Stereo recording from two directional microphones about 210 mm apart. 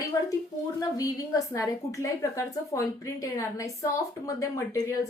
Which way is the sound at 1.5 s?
15° left (ahead or behind).